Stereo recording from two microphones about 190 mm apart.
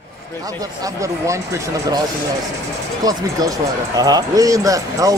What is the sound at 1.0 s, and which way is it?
Speech, 15° right (ahead or behind).